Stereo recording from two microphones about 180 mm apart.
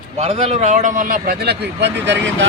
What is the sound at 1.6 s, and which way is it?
Speech, 70° right (ahead or behind).